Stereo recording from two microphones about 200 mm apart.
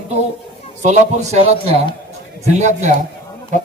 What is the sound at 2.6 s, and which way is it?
Speech, 35° right (ahead or behind).